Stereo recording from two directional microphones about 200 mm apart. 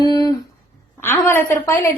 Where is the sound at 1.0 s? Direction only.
10° left (ahead or behind).